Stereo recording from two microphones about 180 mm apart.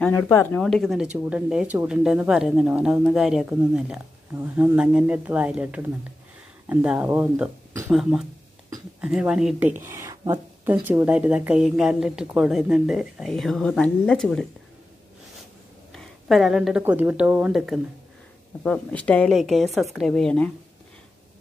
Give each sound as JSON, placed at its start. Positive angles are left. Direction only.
{"t": 0.0, "sound": "speech", "side_deg": 10}
{"t": 0.6, "sound": "speech", "side_deg": 0}
{"t": 15.9, "sound": "speech", "side_deg": 0}
{"t": 18.6, "sound": "speech", "side_deg": 5}